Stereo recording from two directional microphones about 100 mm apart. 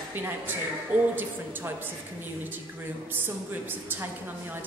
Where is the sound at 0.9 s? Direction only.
15° right (ahead or behind).